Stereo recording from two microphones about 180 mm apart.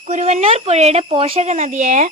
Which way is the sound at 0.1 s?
40° right (ahead or behind).